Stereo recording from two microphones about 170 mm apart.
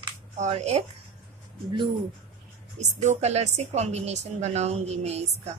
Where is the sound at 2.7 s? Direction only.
45° right (ahead or behind).